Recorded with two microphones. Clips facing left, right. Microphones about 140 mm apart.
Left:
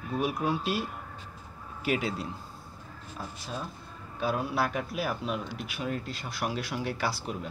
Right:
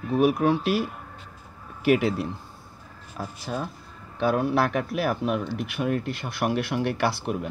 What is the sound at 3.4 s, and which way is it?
Speech, 60° right (ahead or behind).